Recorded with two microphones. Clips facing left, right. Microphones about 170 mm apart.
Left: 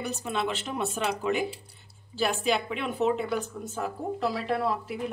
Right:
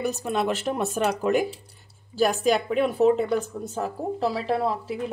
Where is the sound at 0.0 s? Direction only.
45° right (ahead or behind).